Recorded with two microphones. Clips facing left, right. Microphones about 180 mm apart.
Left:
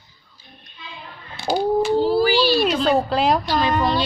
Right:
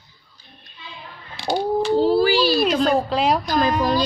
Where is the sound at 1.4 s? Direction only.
5° left (ahead or behind).